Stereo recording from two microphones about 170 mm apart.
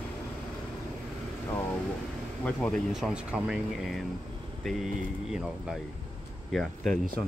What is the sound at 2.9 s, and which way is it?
Speech, 5° right (ahead or behind).